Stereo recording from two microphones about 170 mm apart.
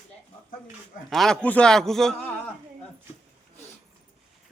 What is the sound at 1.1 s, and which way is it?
A man's voice, centre (ahead or behind).